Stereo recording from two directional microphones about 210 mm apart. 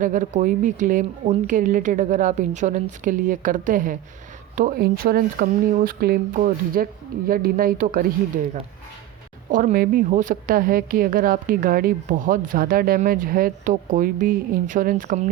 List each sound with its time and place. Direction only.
0.0 s a woman's voice: 35° right (ahead or behind)
9.5 s a woman's voice: 40° right (ahead or behind)